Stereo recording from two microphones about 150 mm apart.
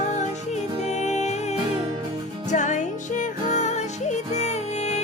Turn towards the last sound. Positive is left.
turn(degrees=50)  # may be behind; listen again after turning